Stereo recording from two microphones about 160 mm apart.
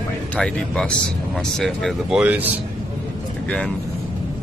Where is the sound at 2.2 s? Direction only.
10° right (ahead or behind).